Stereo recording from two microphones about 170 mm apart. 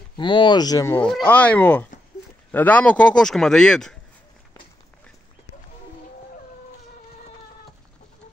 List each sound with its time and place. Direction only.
0.2 s speech: 30° left (ahead or behind)
0.9 s speech: 10° left (ahead or behind)